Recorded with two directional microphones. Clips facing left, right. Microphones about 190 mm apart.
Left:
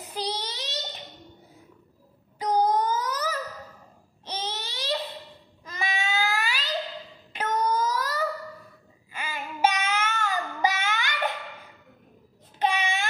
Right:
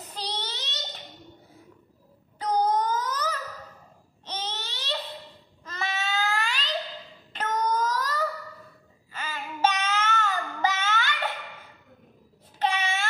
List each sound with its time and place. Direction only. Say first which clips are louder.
0.0 s child singing: left 4 dB; 10° left (ahead or behind)
2.3 s wail: left 1 dB; 10° left (ahead or behind)
4.3 s baby cry: left 2 dB; 10° left (ahead or behind)
5.7 s cat: left 1 dB; 10° left (ahead or behind)
7.3 s a sound: left 1 dB; 10° left (ahead or behind)
9.1 s child singing: left 1 dB; 10° left (ahead or behind)
12.5 s child singing: left 1 dB; 15° left (ahead or behind)